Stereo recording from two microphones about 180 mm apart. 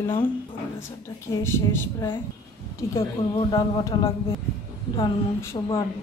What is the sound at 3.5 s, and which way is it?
A woman's voice, 20° left (ahead or behind).